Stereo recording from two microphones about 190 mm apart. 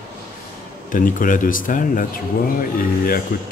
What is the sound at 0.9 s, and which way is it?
Speech, 45° left (ahead or behind).